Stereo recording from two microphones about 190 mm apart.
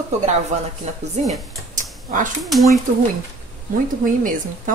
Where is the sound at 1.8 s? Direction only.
45° right (ahead or behind).